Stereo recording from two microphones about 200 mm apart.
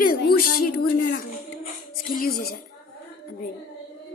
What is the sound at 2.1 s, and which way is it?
Speech, 50° left (ahead or behind).